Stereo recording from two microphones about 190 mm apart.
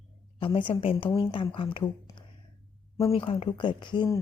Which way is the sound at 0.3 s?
25° left (ahead or behind).